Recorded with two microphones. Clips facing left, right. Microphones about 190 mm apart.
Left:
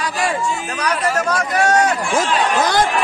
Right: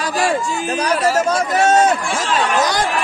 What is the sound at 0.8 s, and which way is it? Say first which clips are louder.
A man's voice: right 3 dB; 25° right (ahead or behind).